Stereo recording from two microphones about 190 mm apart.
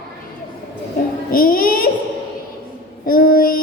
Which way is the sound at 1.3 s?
50° left (ahead or behind).